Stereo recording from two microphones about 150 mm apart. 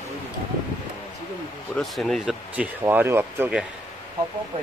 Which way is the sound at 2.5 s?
10° right (ahead or behind).